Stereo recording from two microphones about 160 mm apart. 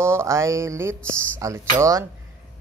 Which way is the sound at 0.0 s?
15° right (ahead or behind).